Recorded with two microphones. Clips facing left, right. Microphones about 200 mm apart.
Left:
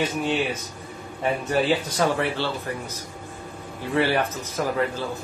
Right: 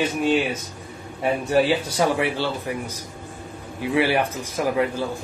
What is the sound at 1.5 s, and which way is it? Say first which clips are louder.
Speech: right 3 dB; 10° right (ahead or behind).